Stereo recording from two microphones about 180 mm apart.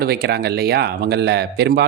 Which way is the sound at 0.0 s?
60° right (ahead or behind).